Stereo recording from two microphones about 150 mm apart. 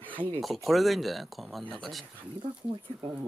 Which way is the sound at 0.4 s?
Centre (ahead or behind).